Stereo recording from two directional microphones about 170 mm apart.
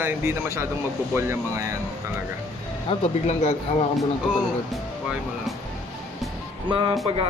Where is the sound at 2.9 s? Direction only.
40° left (ahead or behind).